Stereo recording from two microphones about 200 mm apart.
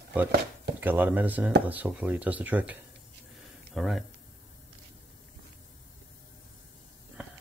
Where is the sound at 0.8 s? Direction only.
10° right (ahead or behind).